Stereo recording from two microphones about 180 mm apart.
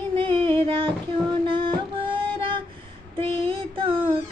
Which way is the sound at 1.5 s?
30° right (ahead or behind).